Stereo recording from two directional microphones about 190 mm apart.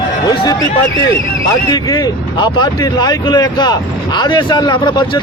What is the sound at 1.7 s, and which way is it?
Speech, 20° left (ahead or behind).